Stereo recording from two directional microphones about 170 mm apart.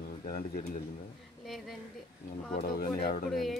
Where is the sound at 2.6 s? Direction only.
60° left (ahead or behind).